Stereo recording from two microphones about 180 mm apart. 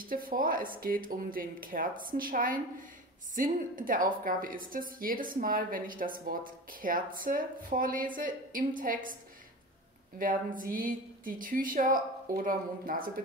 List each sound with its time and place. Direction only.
0.0 s a woman's voice: 50° right (ahead or behind)
10.1 s a woman's voice: 50° right (ahead or behind)